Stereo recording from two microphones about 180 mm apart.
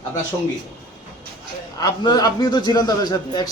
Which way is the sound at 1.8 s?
20° left (ahead or behind).